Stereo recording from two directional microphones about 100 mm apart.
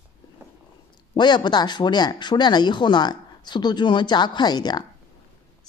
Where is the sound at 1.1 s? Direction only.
50° left (ahead or behind).